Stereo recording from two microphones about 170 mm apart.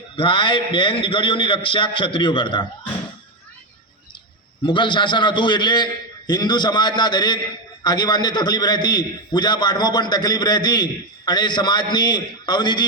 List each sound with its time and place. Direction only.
0.2 s a man's voice: 30° left (ahead or behind)
4.6 s a man's voice: 30° left (ahead or behind)